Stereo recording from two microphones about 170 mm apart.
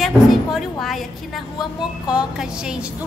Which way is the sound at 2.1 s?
5° right (ahead or behind).